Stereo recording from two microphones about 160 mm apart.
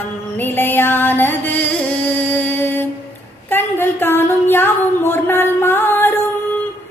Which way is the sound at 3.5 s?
15° left (ahead or behind).